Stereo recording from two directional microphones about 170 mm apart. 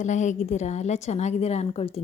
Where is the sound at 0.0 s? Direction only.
45° left (ahead or behind).